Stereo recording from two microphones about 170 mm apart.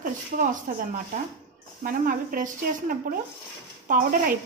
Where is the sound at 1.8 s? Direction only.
55° right (ahead or behind).